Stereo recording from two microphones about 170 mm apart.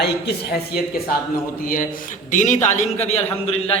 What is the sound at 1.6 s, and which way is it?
A man's voice, 55° left (ahead or behind).